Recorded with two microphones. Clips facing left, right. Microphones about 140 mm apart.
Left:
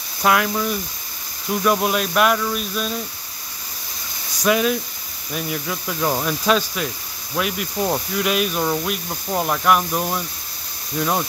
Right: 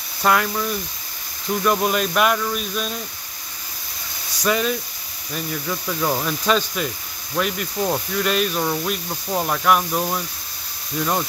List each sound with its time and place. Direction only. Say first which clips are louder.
0.2 s speech: left 1 dB; 5° left (ahead or behind)
4.5 s speech: left 3 dB; 5° left (ahead or behind)